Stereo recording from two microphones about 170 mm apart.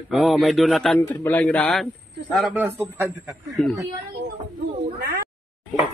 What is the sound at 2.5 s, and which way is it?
A man's voice, 15° right (ahead or behind).